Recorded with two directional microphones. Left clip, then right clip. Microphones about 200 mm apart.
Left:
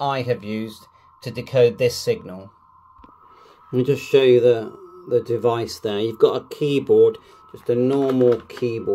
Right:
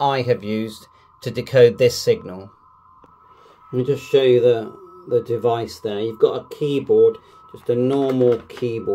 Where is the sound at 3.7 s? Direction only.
25° left (ahead or behind).